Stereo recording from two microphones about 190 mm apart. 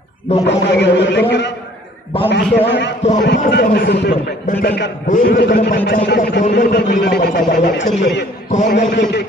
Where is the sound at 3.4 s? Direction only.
60° left (ahead or behind).